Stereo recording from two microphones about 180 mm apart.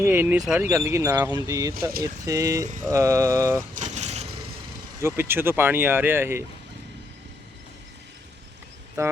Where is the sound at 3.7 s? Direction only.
40° right (ahead or behind).